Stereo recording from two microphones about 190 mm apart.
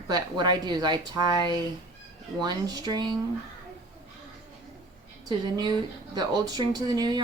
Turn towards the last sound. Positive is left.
turn(degrees=-20)  # may be behind; listen again after turning